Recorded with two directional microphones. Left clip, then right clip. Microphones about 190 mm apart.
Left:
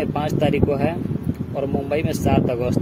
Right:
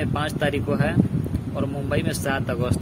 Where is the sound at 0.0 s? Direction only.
Centre (ahead or behind).